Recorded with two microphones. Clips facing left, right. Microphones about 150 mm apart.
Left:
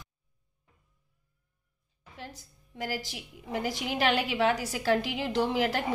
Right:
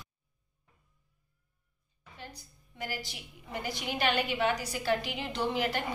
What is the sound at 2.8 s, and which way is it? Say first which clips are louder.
A woman's voice: left 4 dB; 90° left.